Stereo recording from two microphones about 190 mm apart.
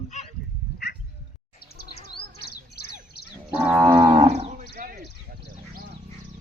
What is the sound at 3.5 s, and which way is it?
Moo, 10° right (ahead or behind).